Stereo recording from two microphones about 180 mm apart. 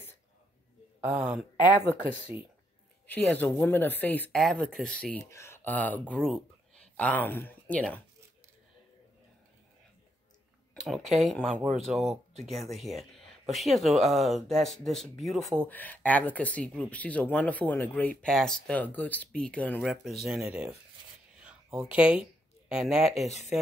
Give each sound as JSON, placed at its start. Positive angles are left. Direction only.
{"t": 1.0, "sound": "speech", "side_deg": -5}
{"t": 3.1, "sound": "speech", "side_deg": 10}
{"t": 10.7, "sound": "speech", "side_deg": 0}
{"t": 11.5, "sound": "speech", "side_deg": -35}
{"t": 11.9, "sound": "speech", "side_deg": 0}
{"t": 21.4, "sound": "a sound", "side_deg": -5}